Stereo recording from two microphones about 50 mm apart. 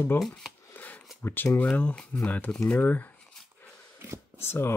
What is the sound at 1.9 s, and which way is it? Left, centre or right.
Speech, centre.